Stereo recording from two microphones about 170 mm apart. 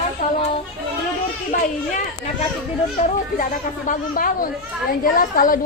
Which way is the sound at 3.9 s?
55° left (ahead or behind).